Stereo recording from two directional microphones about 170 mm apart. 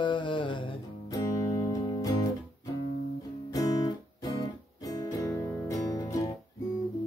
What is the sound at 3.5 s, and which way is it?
Guitar, 20° left (ahead or behind).